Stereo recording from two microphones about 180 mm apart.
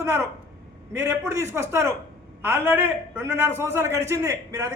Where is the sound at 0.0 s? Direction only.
15° right (ahead or behind).